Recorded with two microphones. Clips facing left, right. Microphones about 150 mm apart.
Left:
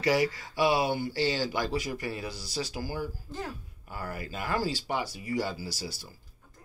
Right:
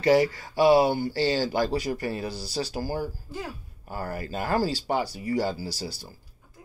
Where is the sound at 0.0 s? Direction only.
30° right (ahead or behind).